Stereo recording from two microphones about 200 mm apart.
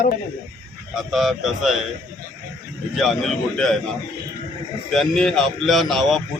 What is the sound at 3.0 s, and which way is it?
Speech, centre (ahead or behind).